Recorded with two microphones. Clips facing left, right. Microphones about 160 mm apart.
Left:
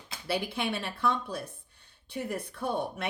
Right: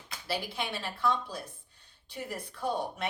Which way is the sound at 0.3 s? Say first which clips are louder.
Left 4 dB; 60° left (ahead or behind).